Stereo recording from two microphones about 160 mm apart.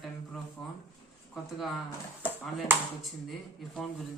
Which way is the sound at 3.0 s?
Centre (ahead or behind).